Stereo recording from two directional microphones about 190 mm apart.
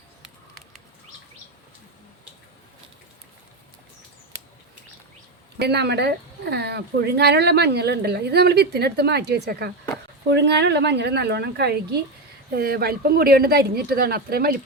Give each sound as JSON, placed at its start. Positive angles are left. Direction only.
{"t": 5.5, "sound": "speech", "side_deg": -60}